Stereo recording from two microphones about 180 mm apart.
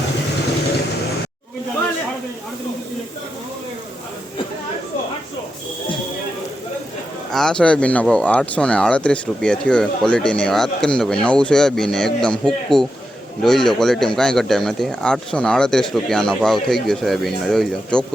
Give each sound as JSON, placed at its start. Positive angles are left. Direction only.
{"t": 7.3, "sound": "speech", "side_deg": 5}